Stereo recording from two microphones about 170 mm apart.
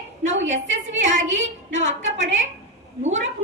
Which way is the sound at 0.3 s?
90° right.